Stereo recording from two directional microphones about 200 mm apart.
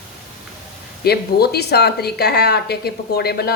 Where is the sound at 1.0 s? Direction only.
50° left (ahead or behind).